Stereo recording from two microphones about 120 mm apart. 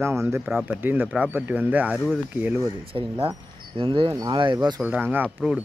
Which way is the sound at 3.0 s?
50° right (ahead or behind).